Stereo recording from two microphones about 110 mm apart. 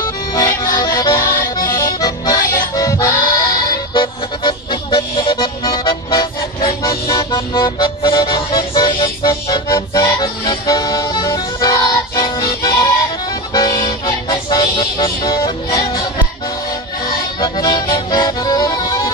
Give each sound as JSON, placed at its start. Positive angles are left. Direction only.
{"t": 0.7, "sound": "music", "side_deg": 35}
{"t": 1.1, "sound": "music", "side_deg": 25}
{"t": 6.1, "sound": "vehicle", "side_deg": 35}
{"t": 7.3, "sound": "music", "side_deg": 35}
{"t": 13.5, "sound": "music", "side_deg": 35}
{"t": 17.4, "sound": "music", "side_deg": 40}